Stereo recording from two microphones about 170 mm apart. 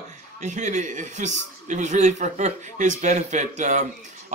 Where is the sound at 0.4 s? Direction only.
45° right (ahead or behind).